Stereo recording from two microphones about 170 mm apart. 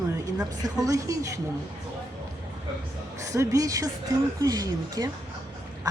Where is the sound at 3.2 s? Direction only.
20° right (ahead or behind).